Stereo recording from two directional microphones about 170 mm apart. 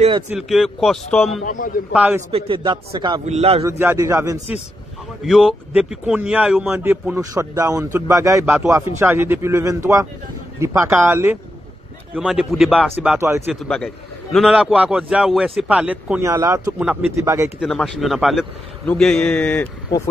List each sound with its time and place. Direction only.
0.3 s a man's voice: centre (ahead or behind)
1.4 s a man's voice: 50° left (ahead or behind)
1.9 s speech: 10° right (ahead or behind)
2.3 s a man's voice: 30° right (ahead or behind)
3.3 s a man's voice: 35° right (ahead or behind)
3.6 s speech: 15° right (ahead or behind)
5.2 s speech: centre (ahead or behind)
12.2 s a man's voice: 5° right (ahead or behind)
17.6 s a man's voice: 5° left (ahead or behind)